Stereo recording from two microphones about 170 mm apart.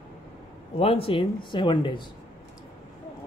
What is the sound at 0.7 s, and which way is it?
Speech, 35° left (ahead or behind).